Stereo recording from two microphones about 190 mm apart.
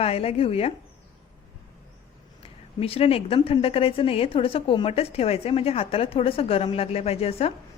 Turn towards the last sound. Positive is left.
turn(degrees=30)  # may be behind; listen again after turning